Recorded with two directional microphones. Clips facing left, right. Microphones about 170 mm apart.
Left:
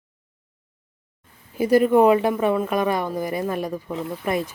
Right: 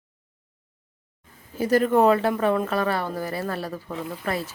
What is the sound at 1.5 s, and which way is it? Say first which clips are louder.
Speech: left 3 dB; 10° left (ahead or behind).